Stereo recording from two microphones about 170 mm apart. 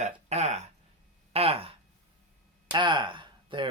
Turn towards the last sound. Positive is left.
turn(degrees=-30)  # may be behind; listen again after turning